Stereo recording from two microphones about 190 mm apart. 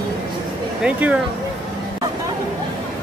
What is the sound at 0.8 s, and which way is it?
Speech, 5° right (ahead or behind).